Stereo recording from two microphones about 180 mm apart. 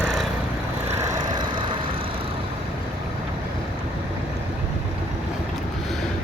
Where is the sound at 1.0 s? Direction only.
20° right (ahead or behind).